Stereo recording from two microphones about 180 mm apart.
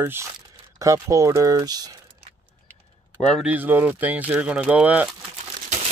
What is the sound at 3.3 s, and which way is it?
Speech, 5° right (ahead or behind).